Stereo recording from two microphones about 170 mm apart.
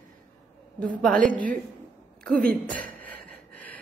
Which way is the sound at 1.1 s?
50° right (ahead or behind).